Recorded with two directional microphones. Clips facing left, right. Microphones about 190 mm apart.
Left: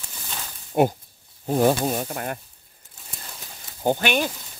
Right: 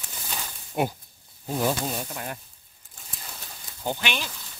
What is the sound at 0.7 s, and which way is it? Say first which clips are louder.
Speech: left 7 dB; 50° left (ahead or behind).